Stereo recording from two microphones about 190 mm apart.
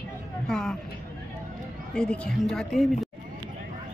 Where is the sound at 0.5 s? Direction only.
Centre (ahead or behind).